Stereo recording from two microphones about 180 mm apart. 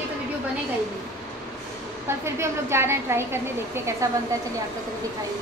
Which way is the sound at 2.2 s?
15° right (ahead or behind).